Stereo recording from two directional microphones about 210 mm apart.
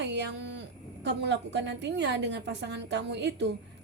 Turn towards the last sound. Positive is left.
turn(degrees=-55)  # may be behind; listen again after turning